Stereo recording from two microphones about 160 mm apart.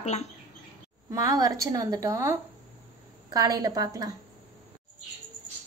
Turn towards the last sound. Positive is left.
turn(degrees=-25)  # may be behind; listen again after turning